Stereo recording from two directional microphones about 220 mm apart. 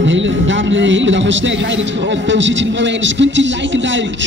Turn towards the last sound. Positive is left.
turn(degrees=-55)  # may be behind; listen again after turning